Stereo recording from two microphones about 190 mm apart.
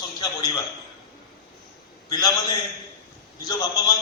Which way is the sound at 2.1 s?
20° left (ahead or behind).